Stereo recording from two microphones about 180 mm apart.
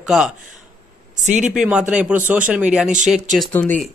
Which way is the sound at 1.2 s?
45° right (ahead or behind).